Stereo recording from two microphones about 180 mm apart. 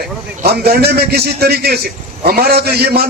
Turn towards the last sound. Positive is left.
turn(degrees=-60)  # may be behind; listen again after turning